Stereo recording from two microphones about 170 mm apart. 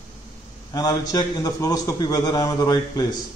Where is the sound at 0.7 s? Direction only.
20° left (ahead or behind).